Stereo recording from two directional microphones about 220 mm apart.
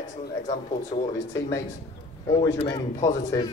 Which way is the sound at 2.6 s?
25° left (ahead or behind).